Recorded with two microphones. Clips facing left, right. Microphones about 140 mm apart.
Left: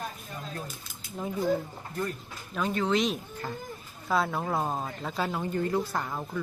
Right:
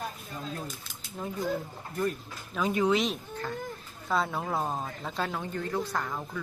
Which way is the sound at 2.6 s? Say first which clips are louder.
Right 1 dB; 5° right (ahead or behind).